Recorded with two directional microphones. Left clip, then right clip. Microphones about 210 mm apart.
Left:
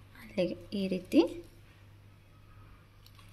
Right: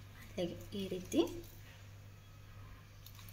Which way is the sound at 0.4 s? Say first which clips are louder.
Left 8 dB; 40° left (ahead or behind).